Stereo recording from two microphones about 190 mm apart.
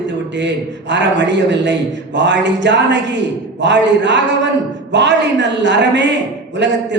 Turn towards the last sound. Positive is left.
turn(degrees=-65)  # may be behind; listen again after turning